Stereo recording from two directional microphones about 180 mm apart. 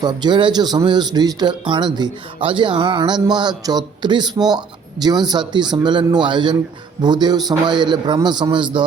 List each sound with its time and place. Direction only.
0.0 s speech: 25° right (ahead or behind)